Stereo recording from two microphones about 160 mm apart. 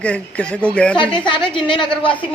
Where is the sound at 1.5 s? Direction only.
30° left (ahead or behind).